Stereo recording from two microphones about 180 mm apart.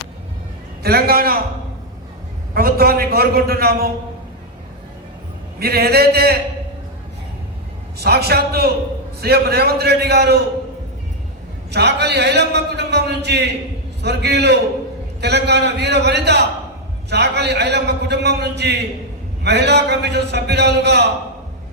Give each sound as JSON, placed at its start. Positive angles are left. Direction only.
{"t": 0.8, "sound": "a man's voice", "side_deg": -60}
{"t": 2.6, "sound": "a man's voice", "side_deg": -55}
{"t": 5.5, "sound": "a man's voice", "side_deg": -60}
{"t": 7.9, "sound": "a man's voice", "side_deg": -60}
{"t": 11.7, "sound": "a man's voice", "side_deg": -70}